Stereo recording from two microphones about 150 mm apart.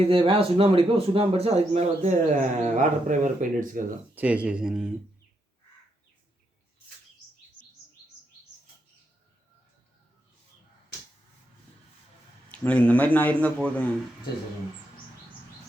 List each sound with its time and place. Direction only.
0.0 s a man's voice: 40° right (ahead or behind); by 3.8 s 65° right (ahead or behind)
4.1 s speech: 10° right (ahead or behind)
12.5 s speech: 10° left (ahead or behind)